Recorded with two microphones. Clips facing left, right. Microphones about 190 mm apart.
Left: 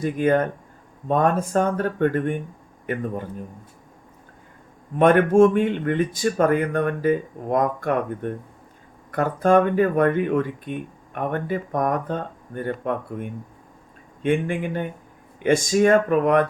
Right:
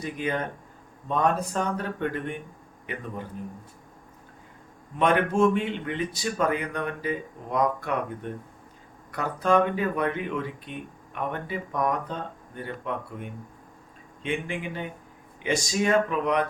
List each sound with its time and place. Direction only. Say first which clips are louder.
0.0 s a man's voice: left 9 dB; 50° left (ahead or behind)
4.9 s speech: left 7 dB; 50° left (ahead or behind)
14.2 s speech: left 8 dB; 50° left (ahead or behind)